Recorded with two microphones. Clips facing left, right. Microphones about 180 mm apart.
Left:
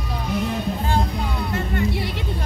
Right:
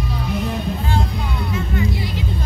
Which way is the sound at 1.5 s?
65° left (ahead or behind).